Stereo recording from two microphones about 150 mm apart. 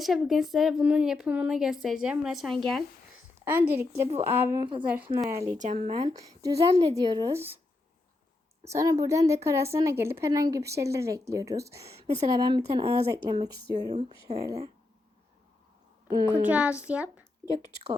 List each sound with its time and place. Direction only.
0.0 s a woman's voice: centre (ahead or behind)
3.4 s a woman's voice: 15° right (ahead or behind)
5.7 s a woman's voice: 35° right (ahead or behind)
8.6 s a woman's voice: 20° right (ahead or behind)
16.1 s speech: 30° right (ahead or behind)
16.4 s a child's voice: 10° right (ahead or behind)